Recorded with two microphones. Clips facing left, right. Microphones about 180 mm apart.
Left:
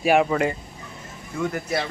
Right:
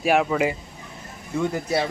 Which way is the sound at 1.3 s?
20° right (ahead or behind).